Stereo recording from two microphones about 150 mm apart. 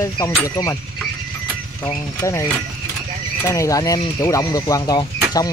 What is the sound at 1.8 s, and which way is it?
Speech, 20° left (ahead or behind).